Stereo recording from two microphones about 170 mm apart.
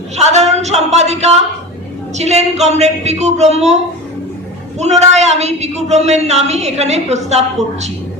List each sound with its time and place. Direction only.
0.2 s a sound: 40° right (ahead or behind)
2.1 s speech: 40° right (ahead or behind)
4.8 s speech: 40° right (ahead or behind)